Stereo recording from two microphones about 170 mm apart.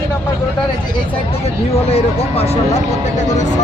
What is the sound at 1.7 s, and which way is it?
Speech, 35° left (ahead or behind).